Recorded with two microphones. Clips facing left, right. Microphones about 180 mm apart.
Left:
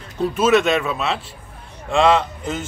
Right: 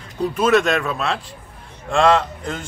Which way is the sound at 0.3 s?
Centre (ahead or behind).